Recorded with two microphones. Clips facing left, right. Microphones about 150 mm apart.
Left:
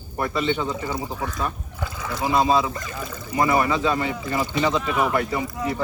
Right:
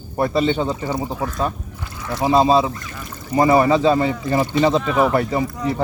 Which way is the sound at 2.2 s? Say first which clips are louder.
Right 5 dB; 30° right (ahead or behind).